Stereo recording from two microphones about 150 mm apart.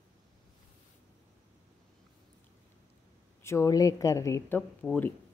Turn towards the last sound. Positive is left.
turn(degrees=10)  # may be behind; listen again after turning